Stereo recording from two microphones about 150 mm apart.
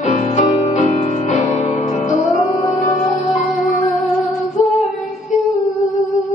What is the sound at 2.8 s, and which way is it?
Music, 50° left (ahead or behind).